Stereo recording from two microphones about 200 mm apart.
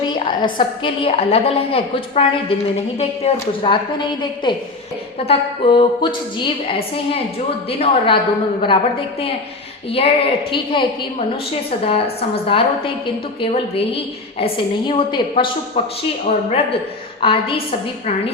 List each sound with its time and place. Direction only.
0.3 s a woman's voice: 25° left (ahead or behind)